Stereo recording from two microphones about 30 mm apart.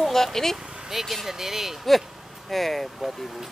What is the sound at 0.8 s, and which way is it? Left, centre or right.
Speech, centre.